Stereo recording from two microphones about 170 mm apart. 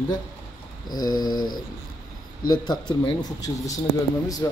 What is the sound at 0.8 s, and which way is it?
Speech, 25° left (ahead or behind).